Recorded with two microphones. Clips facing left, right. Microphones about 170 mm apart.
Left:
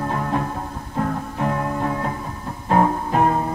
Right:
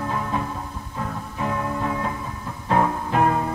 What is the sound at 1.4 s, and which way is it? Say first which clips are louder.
Music: left 2 dB; 45° left (ahead or behind).